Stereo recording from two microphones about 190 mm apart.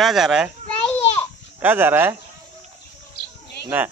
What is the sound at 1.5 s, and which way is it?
Speech, 10° right (ahead or behind).